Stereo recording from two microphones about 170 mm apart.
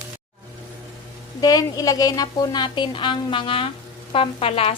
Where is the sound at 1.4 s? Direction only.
20° left (ahead or behind).